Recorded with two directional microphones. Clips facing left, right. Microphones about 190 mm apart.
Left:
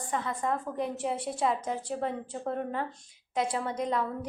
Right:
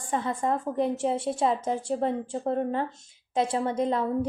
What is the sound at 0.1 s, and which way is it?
A woman's voice, 30° right (ahead or behind).